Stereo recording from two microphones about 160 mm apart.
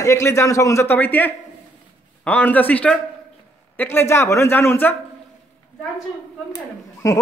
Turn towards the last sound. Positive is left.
turn(degrees=20)  # may be behind; listen again after turning